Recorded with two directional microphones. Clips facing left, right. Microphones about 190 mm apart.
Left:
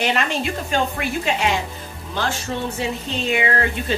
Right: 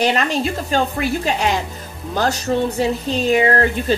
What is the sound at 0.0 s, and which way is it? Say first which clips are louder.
Speech: right 4 dB; 35° right (ahead or behind).